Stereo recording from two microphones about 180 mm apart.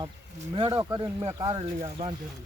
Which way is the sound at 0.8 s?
20° right (ahead or behind).